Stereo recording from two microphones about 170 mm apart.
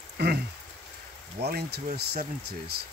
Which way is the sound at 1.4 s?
70° right (ahead or behind).